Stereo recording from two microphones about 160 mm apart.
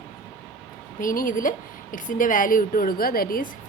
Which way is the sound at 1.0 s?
60° left (ahead or behind).